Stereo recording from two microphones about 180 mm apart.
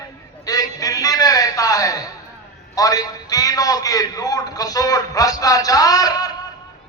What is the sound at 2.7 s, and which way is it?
A man's voice, 20° left (ahead or behind).